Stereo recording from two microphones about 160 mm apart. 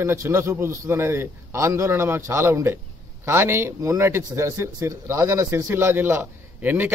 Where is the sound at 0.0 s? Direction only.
15° right (ahead or behind).